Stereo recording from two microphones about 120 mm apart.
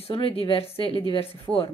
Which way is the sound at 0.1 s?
50° left (ahead or behind).